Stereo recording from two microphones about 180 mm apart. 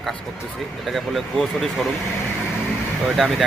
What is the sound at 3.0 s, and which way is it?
Speech, centre (ahead or behind).